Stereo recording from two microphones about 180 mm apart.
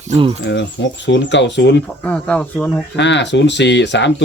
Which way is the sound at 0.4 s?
80° left.